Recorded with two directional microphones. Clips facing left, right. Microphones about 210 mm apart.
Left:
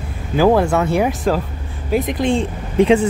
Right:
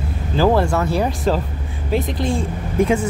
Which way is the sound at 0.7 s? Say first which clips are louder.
Left 3 dB; 20° left (ahead or behind).